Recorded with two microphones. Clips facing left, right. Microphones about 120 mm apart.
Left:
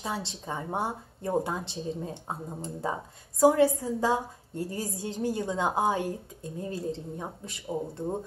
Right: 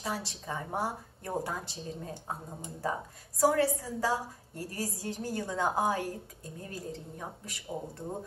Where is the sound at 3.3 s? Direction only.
20° left (ahead or behind).